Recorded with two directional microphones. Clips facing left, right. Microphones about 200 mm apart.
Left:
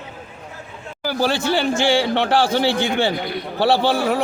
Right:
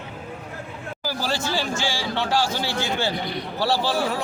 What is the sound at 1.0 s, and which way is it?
Speech, 60° left (ahead or behind).